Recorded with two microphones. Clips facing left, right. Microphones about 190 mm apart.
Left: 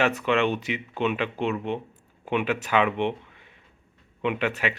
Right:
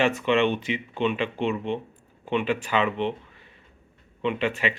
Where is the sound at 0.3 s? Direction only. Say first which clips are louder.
Right 1 dB; 5° left (ahead or behind).